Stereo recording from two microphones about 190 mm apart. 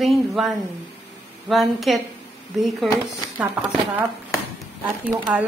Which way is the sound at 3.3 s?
5° right (ahead or behind).